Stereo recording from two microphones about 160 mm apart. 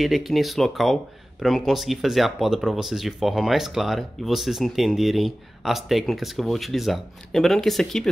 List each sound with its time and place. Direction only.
0.0 s speech: centre (ahead or behind)